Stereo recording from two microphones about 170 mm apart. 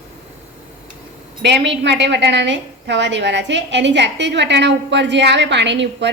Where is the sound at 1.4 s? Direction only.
90° right.